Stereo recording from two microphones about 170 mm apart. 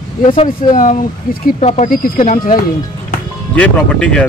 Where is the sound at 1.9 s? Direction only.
50° left (ahead or behind).